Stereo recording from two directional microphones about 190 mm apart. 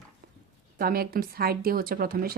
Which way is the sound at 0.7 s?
50° right (ahead or behind).